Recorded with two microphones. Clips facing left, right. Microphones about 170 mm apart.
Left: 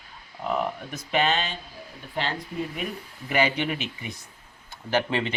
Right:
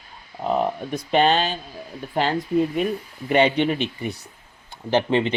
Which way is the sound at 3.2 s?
25° right (ahead or behind).